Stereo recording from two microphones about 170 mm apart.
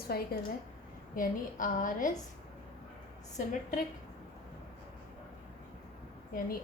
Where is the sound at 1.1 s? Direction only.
50° left (ahead or behind).